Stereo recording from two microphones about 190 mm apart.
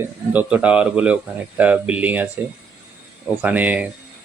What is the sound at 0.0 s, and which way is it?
A man's voice, 10° right (ahead or behind).